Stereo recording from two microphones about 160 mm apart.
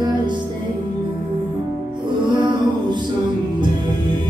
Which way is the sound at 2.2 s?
30° right (ahead or behind).